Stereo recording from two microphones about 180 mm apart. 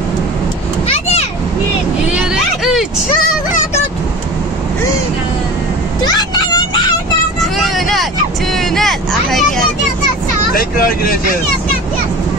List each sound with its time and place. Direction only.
2.1 s vehicle: 5° right (ahead or behind)
6.0 s vehicle: 25° left (ahead or behind)
7.5 s vehicle: centre (ahead or behind)
10.5 s speech: 55° left (ahead or behind)